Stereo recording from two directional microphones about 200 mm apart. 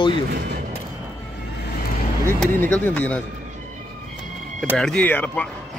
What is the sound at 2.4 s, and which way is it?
Speech, 10° left (ahead or behind).